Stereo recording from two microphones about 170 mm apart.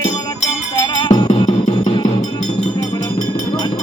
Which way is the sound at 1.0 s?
25° left (ahead or behind).